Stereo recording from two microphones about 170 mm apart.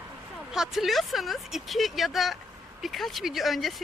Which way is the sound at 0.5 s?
Centre (ahead or behind).